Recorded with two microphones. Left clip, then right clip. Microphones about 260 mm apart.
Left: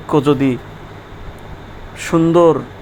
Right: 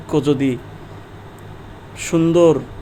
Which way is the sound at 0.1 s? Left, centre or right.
Centre.